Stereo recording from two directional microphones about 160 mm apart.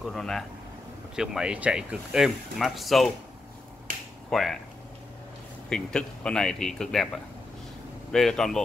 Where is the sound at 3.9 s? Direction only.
60° right (ahead or behind).